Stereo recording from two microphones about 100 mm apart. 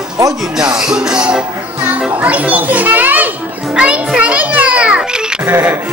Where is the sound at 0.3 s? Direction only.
5° right (ahead or behind).